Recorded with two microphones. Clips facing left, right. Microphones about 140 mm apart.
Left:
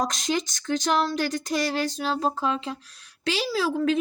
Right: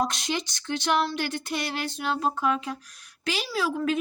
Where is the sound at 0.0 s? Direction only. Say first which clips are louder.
Left 2 dB; 40° left (ahead or behind).